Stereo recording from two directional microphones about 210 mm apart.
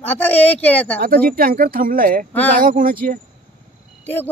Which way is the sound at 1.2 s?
45° right (ahead or behind).